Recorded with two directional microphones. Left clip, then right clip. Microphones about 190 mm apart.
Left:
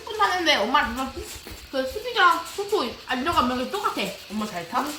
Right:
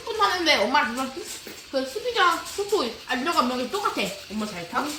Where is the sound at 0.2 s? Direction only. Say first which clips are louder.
Even; centre (ahead or behind).